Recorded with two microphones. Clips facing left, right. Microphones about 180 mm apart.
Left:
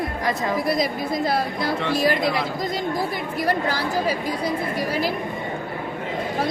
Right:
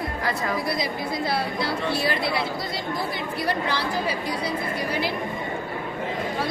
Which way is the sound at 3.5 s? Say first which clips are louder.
Left 3 dB; 45° left (ahead or behind).